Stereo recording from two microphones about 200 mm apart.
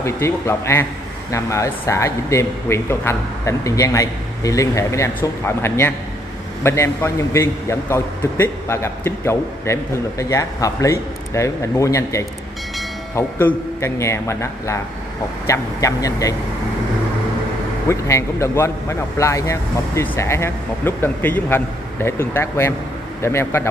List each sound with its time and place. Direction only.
0.0 s a man's voice: 15° left (ahead or behind)
17.8 s a man's voice: 15° left (ahead or behind)